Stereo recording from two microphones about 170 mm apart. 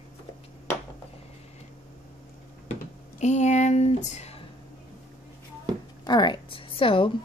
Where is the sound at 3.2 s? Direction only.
40° left (ahead or behind).